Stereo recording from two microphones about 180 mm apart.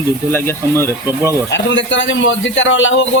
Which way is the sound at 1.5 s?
85° left.